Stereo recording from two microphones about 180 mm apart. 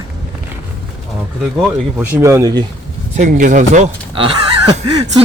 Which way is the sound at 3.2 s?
45° right (ahead or behind).